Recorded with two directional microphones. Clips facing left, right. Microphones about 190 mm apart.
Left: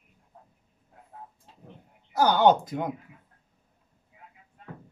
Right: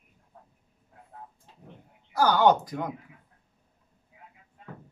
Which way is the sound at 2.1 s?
20° left (ahead or behind).